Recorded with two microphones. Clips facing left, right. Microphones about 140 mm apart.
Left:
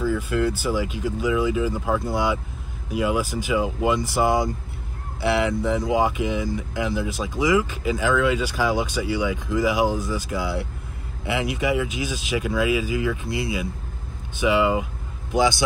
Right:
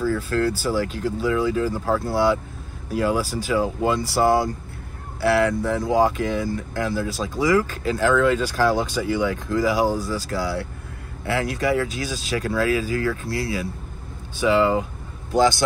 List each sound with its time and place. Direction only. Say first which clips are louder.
0.0 s speech: right 1 dB; 15° left (ahead or behind)
1.7 s speech: right 1 dB; 5° right (ahead or behind)
2.1 s speech: right 4 dB; 15° left (ahead or behind)